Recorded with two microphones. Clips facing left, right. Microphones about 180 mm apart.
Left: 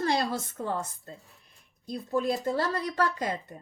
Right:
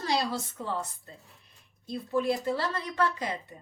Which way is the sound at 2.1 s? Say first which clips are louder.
Even; 45° left (ahead or behind).